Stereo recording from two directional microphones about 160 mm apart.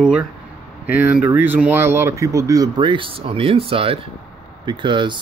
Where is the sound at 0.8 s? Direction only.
10° right (ahead or behind).